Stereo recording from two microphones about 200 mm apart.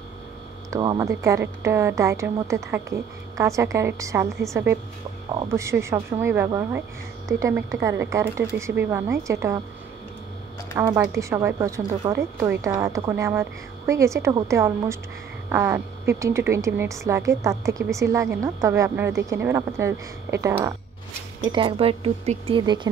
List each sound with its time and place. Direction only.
0.7 s speech: 20° right (ahead or behind)
10.7 s speech: 20° right (ahead or behind)
21.4 s speech: 25° right (ahead or behind)